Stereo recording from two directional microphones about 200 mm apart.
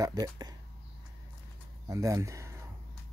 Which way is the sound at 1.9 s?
15° right (ahead or behind).